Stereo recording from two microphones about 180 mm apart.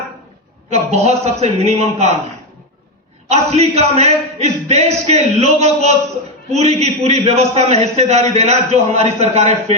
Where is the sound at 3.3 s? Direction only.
35° right (ahead or behind).